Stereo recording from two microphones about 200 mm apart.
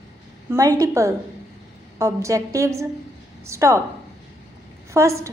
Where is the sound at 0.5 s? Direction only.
15° right (ahead or behind).